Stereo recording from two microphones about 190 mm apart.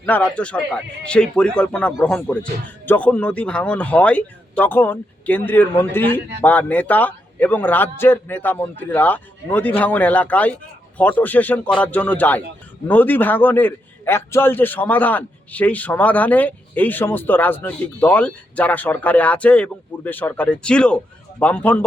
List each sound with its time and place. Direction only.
0.0 s a man's voice: 10° left (ahead or behind)